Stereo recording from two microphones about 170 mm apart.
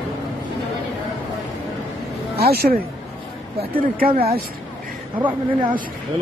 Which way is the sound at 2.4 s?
65° right (ahead or behind).